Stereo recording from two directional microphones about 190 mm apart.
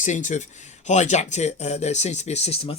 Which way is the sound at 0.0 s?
40° left (ahead or behind).